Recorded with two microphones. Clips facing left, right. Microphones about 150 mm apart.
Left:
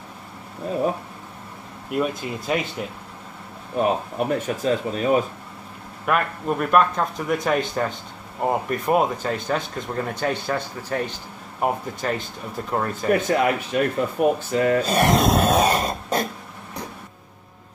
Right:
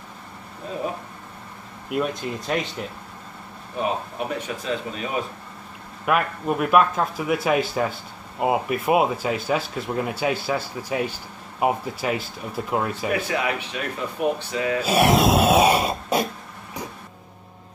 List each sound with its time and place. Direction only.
1.9 s speech: centre (ahead or behind)
4.4 s speech: 45° left (ahead or behind)
6.0 s speech: 5° right (ahead or behind)
13.1 s speech: 45° left (ahead or behind)
14.8 s speech: 5° right (ahead or behind)